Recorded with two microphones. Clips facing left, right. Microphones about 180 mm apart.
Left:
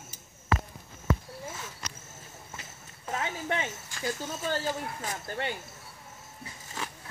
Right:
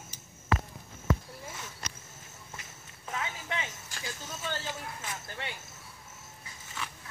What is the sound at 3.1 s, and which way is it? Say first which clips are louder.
Speech: left 5 dB; 40° left (ahead or behind).